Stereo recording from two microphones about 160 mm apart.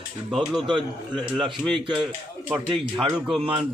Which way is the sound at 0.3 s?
Centre (ahead or behind).